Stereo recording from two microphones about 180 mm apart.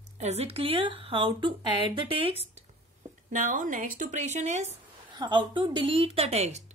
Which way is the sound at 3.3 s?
45° right (ahead or behind).